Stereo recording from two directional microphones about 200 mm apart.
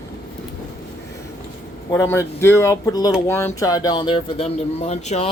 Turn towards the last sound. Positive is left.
turn(degrees=35)  # may be behind; listen again after turning